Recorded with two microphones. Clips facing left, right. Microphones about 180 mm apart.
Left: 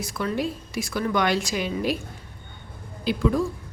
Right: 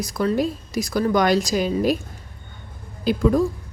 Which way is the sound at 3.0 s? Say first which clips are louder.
Right 4 dB; 45° right (ahead or behind).